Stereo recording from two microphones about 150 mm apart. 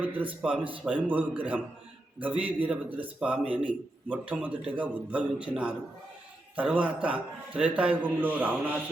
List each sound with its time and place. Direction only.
0.0 s a man's voice: 10° right (ahead or behind)
6.6 s a man's voice: 10° right (ahead or behind)